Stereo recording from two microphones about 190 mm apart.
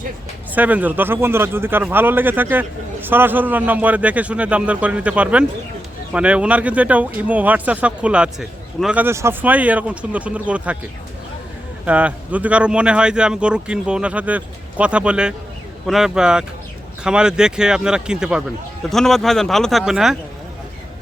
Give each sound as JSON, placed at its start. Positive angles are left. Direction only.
{"t": 0.5, "sound": "speech", "side_deg": -10}
{"t": 11.9, "sound": "speech", "side_deg": -5}